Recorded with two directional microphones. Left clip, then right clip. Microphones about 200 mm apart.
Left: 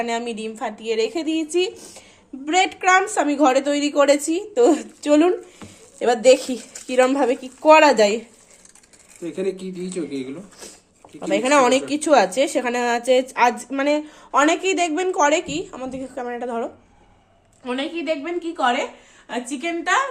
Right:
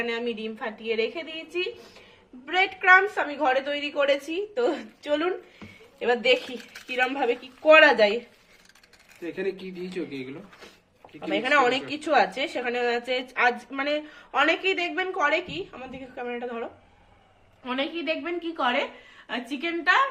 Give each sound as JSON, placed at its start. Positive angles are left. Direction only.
{"t": 0.0, "sound": "a woman's voice", "side_deg": 45}
{"t": 9.2, "sound": "a man's voice", "side_deg": 10}
{"t": 11.3, "sound": "a woman's voice", "side_deg": 45}
{"t": 17.6, "sound": "a woman's voice", "side_deg": 5}